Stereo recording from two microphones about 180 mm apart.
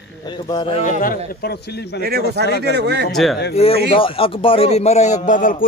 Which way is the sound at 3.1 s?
Centre (ahead or behind).